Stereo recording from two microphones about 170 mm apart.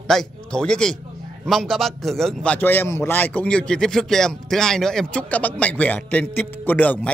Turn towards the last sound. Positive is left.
turn(degrees=10)  # may be behind; listen again after turning